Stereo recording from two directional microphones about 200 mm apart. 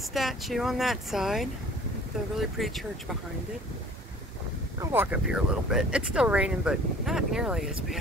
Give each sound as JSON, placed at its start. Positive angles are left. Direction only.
{"t": 0.1, "sound": "speech", "side_deg": 0}
{"t": 4.7, "sound": "speech", "side_deg": -10}